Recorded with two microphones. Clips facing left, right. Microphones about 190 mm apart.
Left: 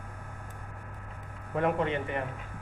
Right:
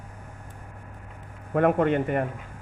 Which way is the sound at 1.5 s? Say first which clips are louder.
Right 7 dB; 55° right (ahead or behind).